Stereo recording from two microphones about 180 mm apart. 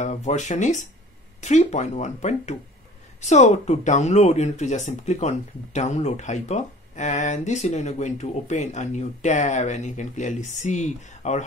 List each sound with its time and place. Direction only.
0.0 s speech: 40° left (ahead or behind)